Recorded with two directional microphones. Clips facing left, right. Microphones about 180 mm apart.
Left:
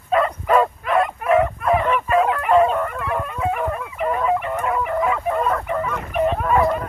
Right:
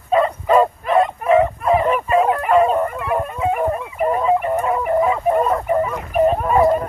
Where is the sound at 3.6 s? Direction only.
30° right (ahead or behind).